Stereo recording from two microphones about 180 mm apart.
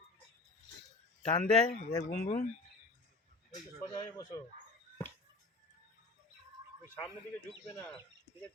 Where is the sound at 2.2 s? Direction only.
45° left (ahead or behind).